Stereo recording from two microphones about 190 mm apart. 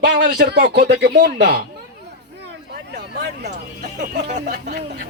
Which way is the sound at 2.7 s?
60° right (ahead or behind).